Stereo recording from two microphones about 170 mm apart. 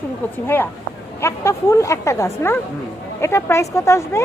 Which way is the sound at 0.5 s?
10° left (ahead or behind).